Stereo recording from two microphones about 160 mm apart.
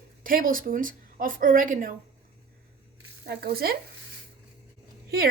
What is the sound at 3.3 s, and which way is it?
Frying, 70° right (ahead or behind).